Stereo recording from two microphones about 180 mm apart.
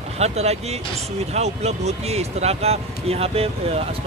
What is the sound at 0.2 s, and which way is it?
Speech, 35° right (ahead or behind).